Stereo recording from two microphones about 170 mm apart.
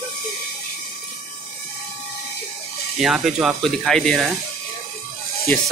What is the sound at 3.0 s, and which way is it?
Speech, centre (ahead or behind).